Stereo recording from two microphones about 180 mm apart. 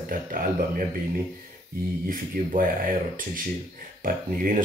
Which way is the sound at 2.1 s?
50° right (ahead or behind).